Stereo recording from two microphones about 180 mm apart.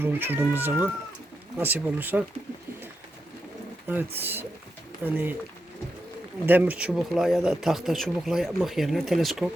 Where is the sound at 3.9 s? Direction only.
10° right (ahead or behind).